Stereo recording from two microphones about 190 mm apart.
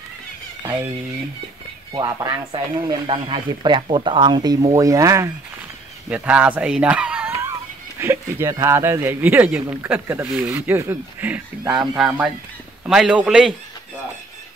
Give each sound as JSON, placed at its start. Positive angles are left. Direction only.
{"t": 0.7, "sound": "speech", "side_deg": -15}
{"t": 6.0, "sound": "speech", "side_deg": -5}
{"t": 12.8, "sound": "a man's voice", "side_deg": -5}